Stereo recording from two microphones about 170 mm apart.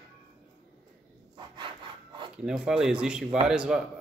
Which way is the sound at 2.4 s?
5° right (ahead or behind).